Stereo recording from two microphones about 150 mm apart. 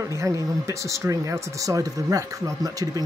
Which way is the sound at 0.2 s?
20° right (ahead or behind).